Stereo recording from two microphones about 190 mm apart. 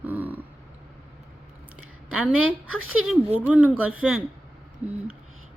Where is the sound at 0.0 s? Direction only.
10° right (ahead or behind).